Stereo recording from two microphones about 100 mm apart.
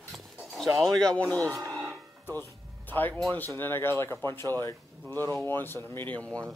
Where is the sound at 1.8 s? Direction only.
Centre (ahead or behind).